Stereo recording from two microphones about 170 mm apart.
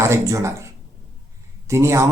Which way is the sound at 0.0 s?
15° right (ahead or behind).